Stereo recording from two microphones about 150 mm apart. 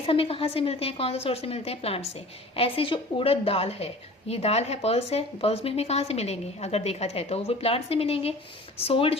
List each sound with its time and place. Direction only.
0.0 s a woman's voice: 40° left (ahead or behind)